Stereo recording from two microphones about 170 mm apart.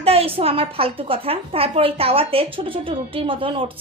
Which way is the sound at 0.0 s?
35° right (ahead or behind).